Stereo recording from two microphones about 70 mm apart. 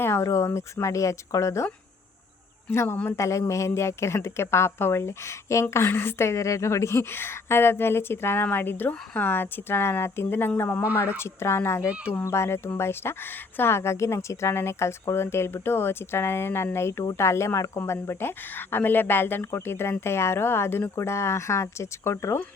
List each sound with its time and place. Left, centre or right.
0.0 s speech: left
2.7 s a woman's voice: left
3.2 s a woman's voice: left